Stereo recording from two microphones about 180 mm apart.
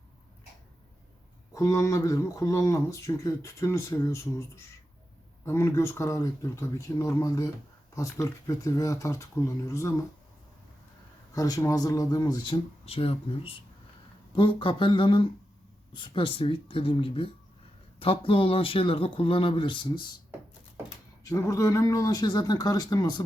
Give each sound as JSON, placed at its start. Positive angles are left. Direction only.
{"t": 1.5, "sound": "speech", "side_deg": 15}
{"t": 11.3, "sound": "speech", "side_deg": 20}
{"t": 12.8, "sound": "speech", "side_deg": 30}
{"t": 21.2, "sound": "speech", "side_deg": 20}